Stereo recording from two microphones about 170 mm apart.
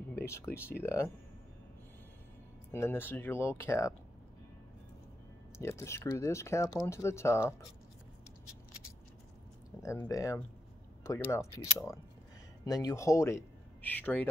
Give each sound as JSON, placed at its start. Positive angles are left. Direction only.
{"t": 0.1, "sound": "speech", "side_deg": 15}
{"t": 2.7, "sound": "speech", "side_deg": 15}
{"t": 5.6, "sound": "speech", "side_deg": 15}
{"t": 9.8, "sound": "speech", "side_deg": 20}